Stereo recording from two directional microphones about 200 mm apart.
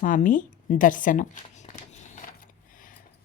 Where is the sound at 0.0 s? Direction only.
40° left (ahead or behind).